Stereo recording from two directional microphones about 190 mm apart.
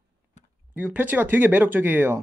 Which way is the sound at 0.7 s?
10° right (ahead or behind).